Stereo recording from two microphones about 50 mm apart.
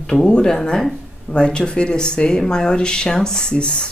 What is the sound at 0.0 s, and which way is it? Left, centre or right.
Speech, centre.